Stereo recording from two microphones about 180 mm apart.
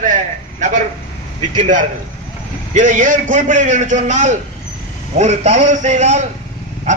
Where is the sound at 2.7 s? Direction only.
45° right (ahead or behind).